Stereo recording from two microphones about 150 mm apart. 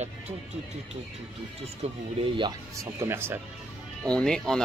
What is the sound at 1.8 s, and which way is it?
Speech, 45° right (ahead or behind).